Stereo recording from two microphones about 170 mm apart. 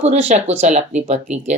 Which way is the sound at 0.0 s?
40° right (ahead or behind).